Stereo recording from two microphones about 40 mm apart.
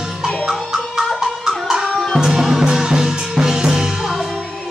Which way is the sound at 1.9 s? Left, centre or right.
Centre.